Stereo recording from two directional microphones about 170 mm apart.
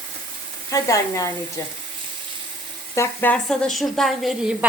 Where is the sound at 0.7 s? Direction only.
20° left (ahead or behind).